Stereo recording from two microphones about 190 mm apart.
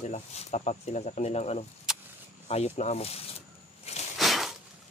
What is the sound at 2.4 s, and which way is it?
Speech, 35° left (ahead or behind).